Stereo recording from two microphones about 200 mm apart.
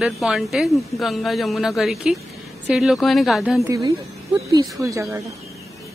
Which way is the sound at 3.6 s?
15° right (ahead or behind).